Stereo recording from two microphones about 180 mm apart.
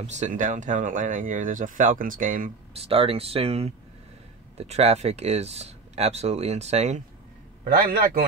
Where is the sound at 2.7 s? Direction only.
30° right (ahead or behind).